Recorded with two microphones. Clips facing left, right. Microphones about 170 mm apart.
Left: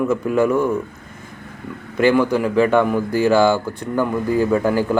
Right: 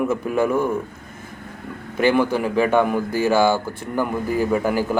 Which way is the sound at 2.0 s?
15° right (ahead or behind).